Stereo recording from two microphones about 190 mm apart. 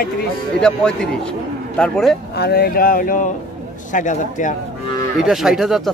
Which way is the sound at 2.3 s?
60° left (ahead or behind).